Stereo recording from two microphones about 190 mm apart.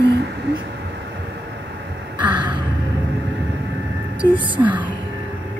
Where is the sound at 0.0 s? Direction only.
65° right (ahead or behind).